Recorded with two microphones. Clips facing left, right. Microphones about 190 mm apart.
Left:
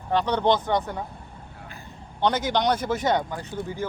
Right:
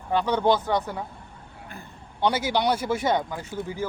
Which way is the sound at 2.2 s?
10° right (ahead or behind).